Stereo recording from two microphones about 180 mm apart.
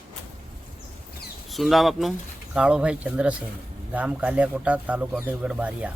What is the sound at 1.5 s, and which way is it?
Speech, centre (ahead or behind).